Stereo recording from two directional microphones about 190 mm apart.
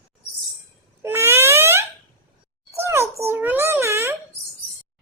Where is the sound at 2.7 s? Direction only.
15° right (ahead or behind).